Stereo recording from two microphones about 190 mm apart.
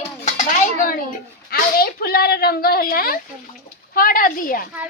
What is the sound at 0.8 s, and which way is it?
Speech, 50° left (ahead or behind).